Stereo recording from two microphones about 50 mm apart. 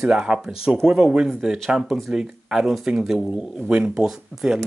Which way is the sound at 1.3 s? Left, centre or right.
Centre.